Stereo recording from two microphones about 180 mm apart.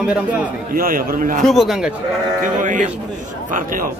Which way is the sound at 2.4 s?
45° right (ahead or behind).